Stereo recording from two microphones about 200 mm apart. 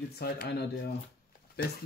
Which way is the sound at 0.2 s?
50° left (ahead or behind).